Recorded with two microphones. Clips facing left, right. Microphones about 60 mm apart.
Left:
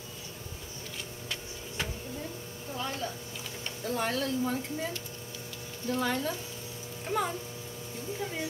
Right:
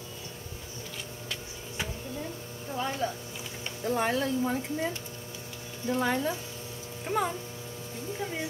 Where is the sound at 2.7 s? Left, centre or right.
Right.